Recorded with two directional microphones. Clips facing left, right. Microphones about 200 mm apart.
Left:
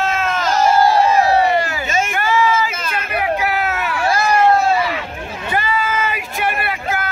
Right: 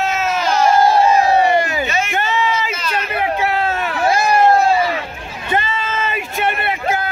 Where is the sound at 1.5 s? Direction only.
20° right (ahead or behind).